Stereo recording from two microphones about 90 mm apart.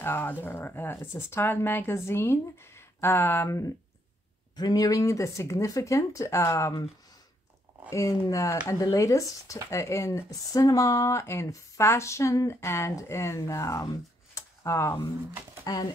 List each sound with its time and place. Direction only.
0.0 s speech: 25° left (ahead or behind)
4.6 s speech: 45° left (ahead or behind)
7.9 s speech: 35° left (ahead or behind)
14.3 s a sound: 35° left (ahead or behind)
15.6 s speech: 45° left (ahead or behind)